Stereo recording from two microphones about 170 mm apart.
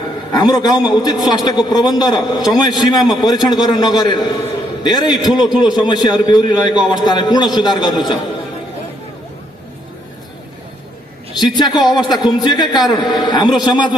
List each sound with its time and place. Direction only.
0.3 s a man's voice: 25° left (ahead or behind)
11.3 s a man's voice: 25° left (ahead or behind)